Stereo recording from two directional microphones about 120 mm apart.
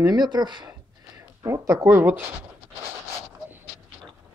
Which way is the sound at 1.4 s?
25° right (ahead or behind).